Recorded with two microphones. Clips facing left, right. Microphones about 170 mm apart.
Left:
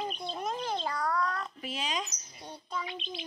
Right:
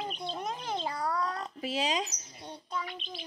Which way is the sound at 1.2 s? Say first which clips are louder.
Even; 35° right (ahead or behind).